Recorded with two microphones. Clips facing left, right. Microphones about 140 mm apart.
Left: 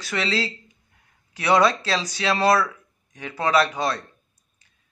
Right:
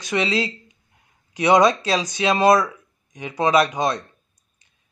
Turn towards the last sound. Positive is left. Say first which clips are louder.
# right 2 dB
turn(degrees=-20)  # may be behind; listen again after turning